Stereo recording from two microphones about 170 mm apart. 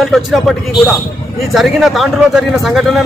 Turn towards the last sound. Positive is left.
turn(degrees=0)  # may be behind; listen again after turning